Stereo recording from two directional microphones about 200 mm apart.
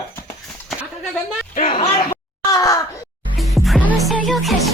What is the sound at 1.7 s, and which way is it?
Speech, 30° left (ahead or behind).